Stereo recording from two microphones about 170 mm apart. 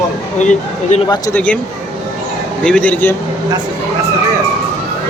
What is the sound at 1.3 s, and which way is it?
Speech, 10° left (ahead or behind).